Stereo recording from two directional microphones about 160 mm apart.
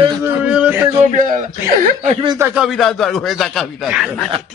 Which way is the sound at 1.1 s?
50° right (ahead or behind).